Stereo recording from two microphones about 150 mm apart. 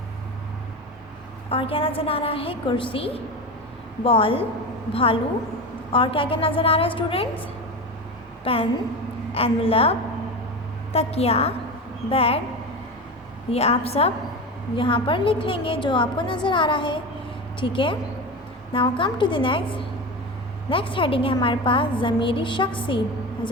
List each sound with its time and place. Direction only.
1.5 s a woman's voice: 40° left (ahead or behind)
8.5 s a woman's voice: 40° left (ahead or behind)
10.9 s a woman's voice: 45° left (ahead or behind)
13.5 s a woman's voice: 45° left (ahead or behind)